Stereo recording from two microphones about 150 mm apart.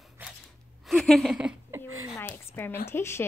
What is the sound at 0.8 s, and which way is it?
Speech, centre (ahead or behind).